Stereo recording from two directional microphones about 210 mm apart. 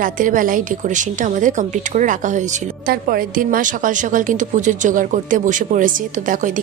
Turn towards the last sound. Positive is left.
turn(degrees=-40)  # may be behind; listen again after turning